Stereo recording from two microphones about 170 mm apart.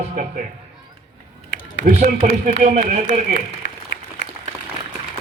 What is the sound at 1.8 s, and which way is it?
A man's voice, 50° right (ahead or behind).